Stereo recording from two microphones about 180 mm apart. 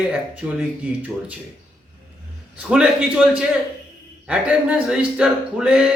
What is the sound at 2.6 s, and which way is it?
Speech, 5° right (ahead or behind).